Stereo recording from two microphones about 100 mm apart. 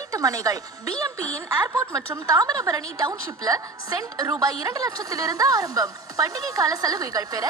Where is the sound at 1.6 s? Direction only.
35° right (ahead or behind).